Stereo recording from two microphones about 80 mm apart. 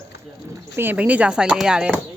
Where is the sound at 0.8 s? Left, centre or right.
Right.